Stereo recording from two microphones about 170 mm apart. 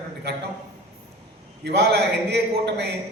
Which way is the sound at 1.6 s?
75° right (ahead or behind).